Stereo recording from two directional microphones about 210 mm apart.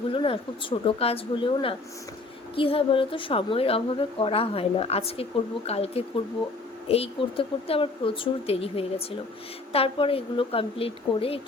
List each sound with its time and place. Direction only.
0.1 s a woman's voice: 25° left (ahead or behind)